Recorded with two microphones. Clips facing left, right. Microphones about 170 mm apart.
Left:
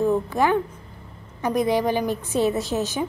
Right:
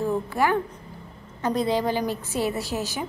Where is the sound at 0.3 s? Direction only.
20° left (ahead or behind).